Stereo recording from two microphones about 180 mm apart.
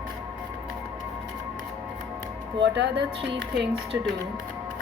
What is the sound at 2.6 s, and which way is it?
A woman's voice, 70° right (ahead or behind).